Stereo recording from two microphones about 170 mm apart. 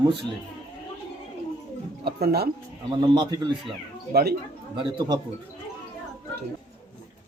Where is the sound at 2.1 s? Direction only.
65° right (ahead or behind).